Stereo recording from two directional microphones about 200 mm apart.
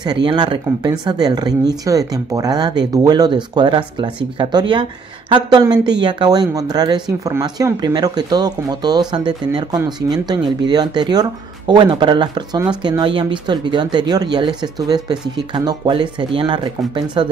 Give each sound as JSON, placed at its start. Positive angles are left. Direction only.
{"t": 0.0, "sound": "speech", "side_deg": -20}